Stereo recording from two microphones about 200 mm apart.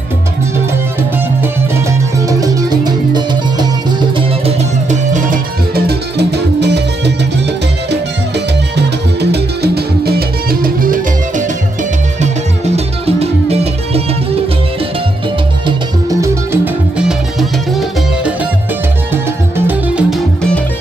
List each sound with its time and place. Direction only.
1.4 s music: 15° right (ahead or behind)
4.2 s music: 35° right (ahead or behind)
5.9 s music: 55° right (ahead or behind)
8.7 s music: 55° right (ahead or behind)
12.2 s music: 30° right (ahead or behind)
15.6 s music: 15° right (ahead or behind)
17.0 s music: centre (ahead or behind)
19.6 s music: 5° right (ahead or behind)